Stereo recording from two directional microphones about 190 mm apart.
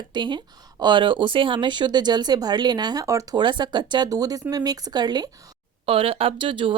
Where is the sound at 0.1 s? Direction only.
25° right (ahead or behind).